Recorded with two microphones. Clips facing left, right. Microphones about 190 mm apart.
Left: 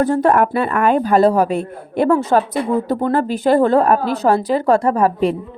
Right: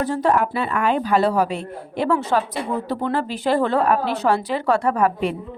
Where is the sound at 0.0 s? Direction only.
55° left (ahead or behind); by 5.4 s 35° left (ahead or behind).